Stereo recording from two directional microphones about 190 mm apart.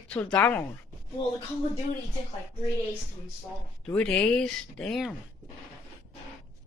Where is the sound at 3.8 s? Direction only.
5° left (ahead or behind).